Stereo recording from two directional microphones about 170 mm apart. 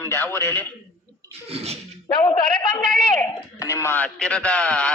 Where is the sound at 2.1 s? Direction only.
25° left (ahead or behind).